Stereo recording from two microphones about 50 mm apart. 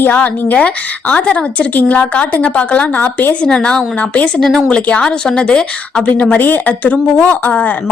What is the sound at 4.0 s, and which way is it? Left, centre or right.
A woman's voice, left.